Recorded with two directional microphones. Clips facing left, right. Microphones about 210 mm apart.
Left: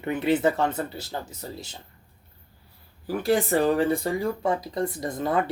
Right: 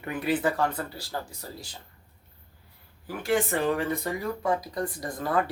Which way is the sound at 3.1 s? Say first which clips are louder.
Left 4 dB; 35° left (ahead or behind).